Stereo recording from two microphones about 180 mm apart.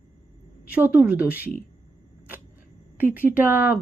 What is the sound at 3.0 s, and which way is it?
Speech, 10° right (ahead or behind).